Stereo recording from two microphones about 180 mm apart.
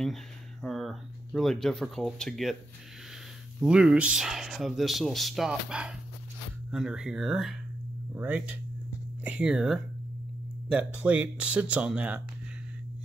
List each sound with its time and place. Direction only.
0.0 s speech: centre (ahead or behind)
3.5 s speech: 5° right (ahead or behind)